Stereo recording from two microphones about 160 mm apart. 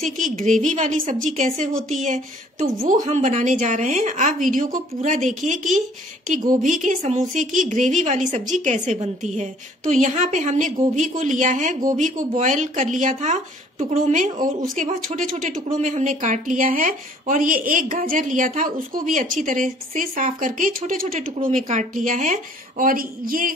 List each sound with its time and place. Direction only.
0.4 s a woman's voice: 50° right (ahead or behind)